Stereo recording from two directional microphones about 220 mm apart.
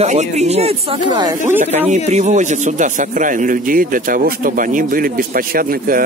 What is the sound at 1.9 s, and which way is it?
Speech, 30° right (ahead or behind).